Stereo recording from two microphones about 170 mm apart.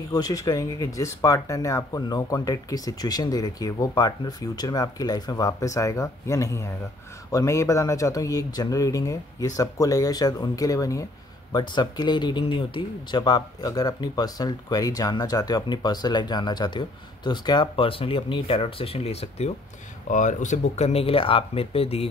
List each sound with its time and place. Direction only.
0.1 s speech: 20° left (ahead or behind)